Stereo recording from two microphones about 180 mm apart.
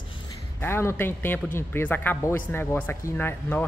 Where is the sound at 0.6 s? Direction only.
15° left (ahead or behind).